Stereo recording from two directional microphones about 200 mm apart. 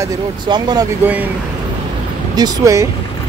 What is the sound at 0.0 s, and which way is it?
Speech, 20° right (ahead or behind).